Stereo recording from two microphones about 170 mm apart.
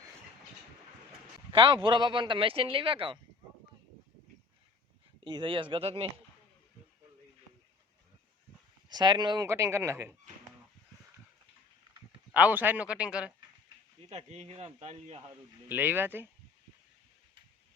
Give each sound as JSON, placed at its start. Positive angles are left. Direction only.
{"t": 1.5, "sound": "speech", "side_deg": -30}
{"t": 5.2, "sound": "speech", "side_deg": -30}
{"t": 8.9, "sound": "speech", "side_deg": -25}
{"t": 12.3, "sound": "speech", "side_deg": -10}
{"t": 14.0, "sound": "speech", "side_deg": -40}
{"t": 15.7, "sound": "speech", "side_deg": -10}